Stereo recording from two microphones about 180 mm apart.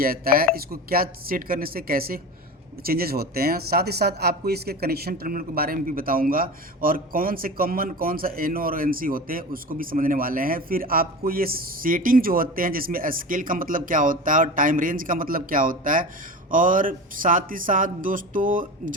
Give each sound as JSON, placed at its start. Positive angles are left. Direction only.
{"t": 0.0, "sound": "speech", "side_deg": -55}